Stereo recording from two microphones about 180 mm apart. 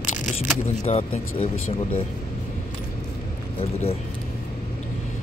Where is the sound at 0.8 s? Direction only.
35° left (ahead or behind).